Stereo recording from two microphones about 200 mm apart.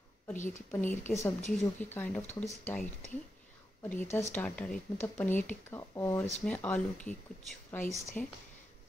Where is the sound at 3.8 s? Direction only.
10° left (ahead or behind).